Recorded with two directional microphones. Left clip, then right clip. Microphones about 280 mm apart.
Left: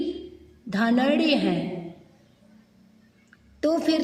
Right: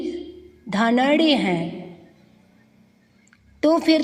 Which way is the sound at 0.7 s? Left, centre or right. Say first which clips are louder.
Right 4 dB; centre.